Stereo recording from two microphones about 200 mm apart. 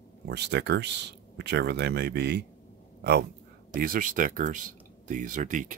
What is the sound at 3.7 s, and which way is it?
Speech, 45° right (ahead or behind).